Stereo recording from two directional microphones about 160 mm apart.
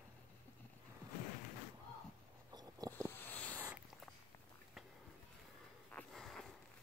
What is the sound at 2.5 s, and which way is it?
Biting, 25° right (ahead or behind).